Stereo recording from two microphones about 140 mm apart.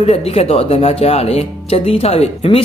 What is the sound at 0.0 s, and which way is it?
A man's voice, 50° left (ahead or behind).